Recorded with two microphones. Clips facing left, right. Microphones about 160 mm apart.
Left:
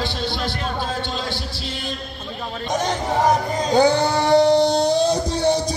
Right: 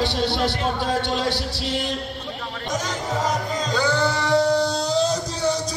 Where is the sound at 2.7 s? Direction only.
55° left (ahead or behind).